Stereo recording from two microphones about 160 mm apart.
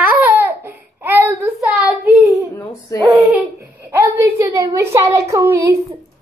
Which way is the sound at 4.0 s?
15° right (ahead or behind).